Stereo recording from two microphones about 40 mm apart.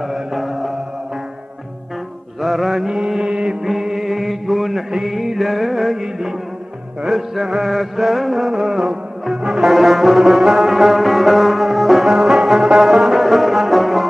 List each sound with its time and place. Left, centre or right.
0.0 s music: centre
2.4 s mantra: centre
3.2 s mantra: right
3.6 s chant: centre
4.9 s music: centre
7.1 s mantra: centre